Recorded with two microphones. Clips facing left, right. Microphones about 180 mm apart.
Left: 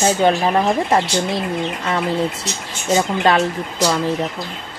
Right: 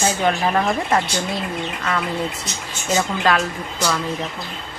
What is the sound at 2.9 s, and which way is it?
Speech, 25° left (ahead or behind).